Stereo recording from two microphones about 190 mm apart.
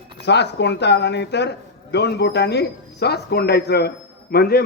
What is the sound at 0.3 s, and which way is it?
A man's voice, 65° left (ahead or behind).